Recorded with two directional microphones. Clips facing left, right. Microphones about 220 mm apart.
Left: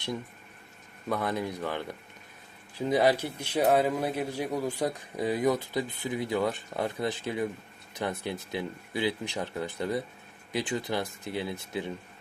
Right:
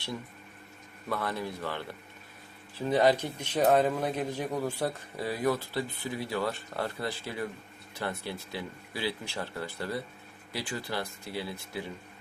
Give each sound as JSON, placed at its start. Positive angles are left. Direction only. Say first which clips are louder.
{"t": 1.1, "sound": "a man's voice", "louder": "left 3 dB", "side_deg": 15}